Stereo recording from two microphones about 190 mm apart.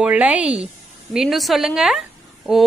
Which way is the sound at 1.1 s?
Centre (ahead or behind).